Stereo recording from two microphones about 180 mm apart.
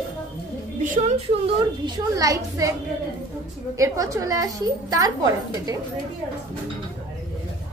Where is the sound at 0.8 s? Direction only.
40° right (ahead or behind).